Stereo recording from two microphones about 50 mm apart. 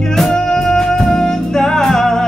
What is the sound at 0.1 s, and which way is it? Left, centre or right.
Music, centre.